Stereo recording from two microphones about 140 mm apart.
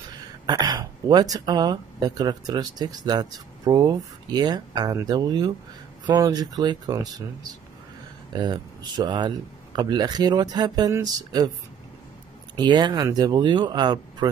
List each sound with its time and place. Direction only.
0.1 s speech: 30° right (ahead or behind)
8.4 s speech: 30° right (ahead or behind)
12.5 s speech: 30° right (ahead or behind)